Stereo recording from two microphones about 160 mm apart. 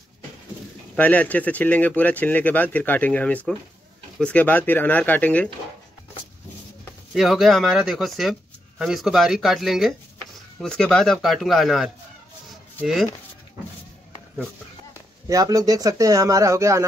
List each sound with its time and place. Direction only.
0.9 s speech: 10° left (ahead or behind)
7.2 s speech: centre (ahead or behind)
15.2 s speech: 20° right (ahead or behind)